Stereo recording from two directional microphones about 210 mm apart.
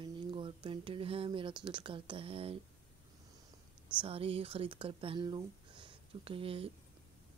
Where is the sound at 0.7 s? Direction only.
25° right (ahead or behind).